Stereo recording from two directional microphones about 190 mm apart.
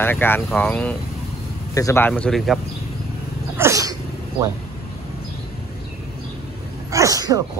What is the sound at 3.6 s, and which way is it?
Sneeze, 15° right (ahead or behind).